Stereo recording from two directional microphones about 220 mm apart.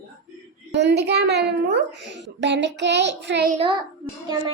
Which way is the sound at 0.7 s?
50° right (ahead or behind).